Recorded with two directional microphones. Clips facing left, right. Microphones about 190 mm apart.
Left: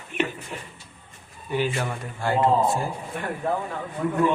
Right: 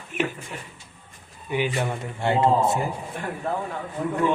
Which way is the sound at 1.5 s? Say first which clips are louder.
Right 1 dB; 15° right (ahead or behind).